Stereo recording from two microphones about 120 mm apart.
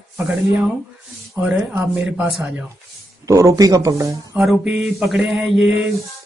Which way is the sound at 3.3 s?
25° right (ahead or behind).